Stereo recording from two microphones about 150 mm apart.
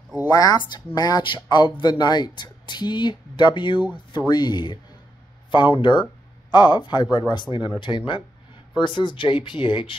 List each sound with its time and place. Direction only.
0.3 s speech: 25° left (ahead or behind)